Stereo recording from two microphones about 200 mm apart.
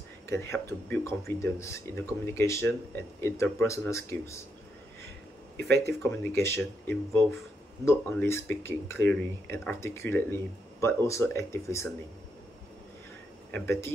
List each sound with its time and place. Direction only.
0.3 s speech: 10° left (ahead or behind)
5.6 s speech: 55° right (ahead or behind)
6.2 s speech: 10° left (ahead or behind)
13.5 s speech: 10° left (ahead or behind)